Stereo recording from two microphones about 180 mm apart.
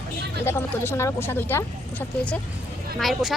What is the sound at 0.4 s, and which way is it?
Speech, 15° left (ahead or behind).